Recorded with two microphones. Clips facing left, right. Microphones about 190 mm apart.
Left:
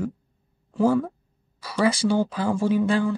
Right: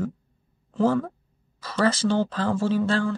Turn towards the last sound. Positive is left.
turn(degrees=15)  # may be behind; listen again after turning